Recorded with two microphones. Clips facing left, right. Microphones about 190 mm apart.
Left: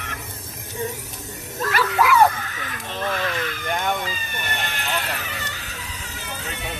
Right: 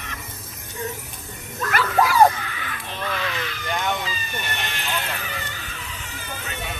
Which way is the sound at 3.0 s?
45° left (ahead or behind).